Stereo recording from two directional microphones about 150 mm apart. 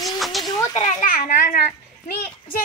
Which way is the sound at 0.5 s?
25° left (ahead or behind).